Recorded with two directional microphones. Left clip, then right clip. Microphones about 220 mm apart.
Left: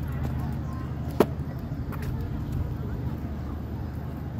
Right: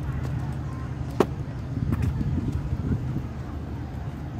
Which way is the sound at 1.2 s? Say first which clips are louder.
Even; 25° left (ahead or behind).